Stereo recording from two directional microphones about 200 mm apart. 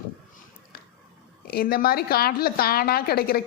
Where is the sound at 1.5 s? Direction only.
50° left (ahead or behind).